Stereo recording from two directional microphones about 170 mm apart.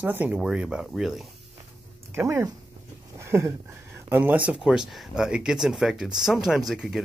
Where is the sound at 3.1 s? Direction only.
15° right (ahead or behind).